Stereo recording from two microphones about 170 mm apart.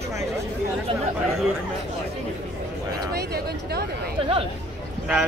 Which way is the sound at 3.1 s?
70° right (ahead or behind).